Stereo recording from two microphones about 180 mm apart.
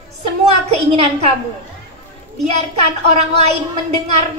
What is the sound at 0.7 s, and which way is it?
Speech, 35° right (ahead or behind).